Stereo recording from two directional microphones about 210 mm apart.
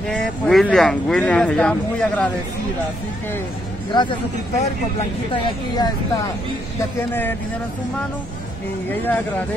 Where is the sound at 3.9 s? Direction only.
20° left (ahead or behind).